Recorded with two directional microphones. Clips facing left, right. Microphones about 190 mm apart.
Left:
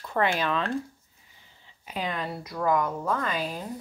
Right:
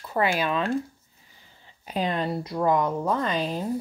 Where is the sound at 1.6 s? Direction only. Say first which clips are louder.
Right 5 dB; 35° right (ahead or behind).